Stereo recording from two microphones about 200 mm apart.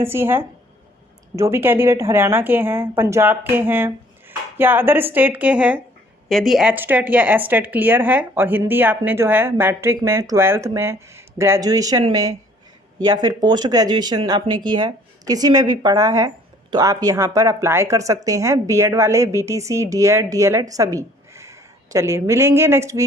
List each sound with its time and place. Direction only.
0.0 s speech: 10° right (ahead or behind)